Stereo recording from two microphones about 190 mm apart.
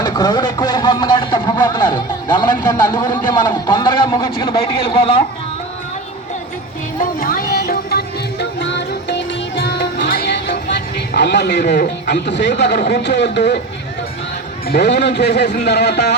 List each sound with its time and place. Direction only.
0.0 s a man's voice: 20° left (ahead or behind)
7.0 s music: 45° left (ahead or behind); by 13.6 s 65° left (ahead or behind)
14.7 s speech: 60° left (ahead or behind)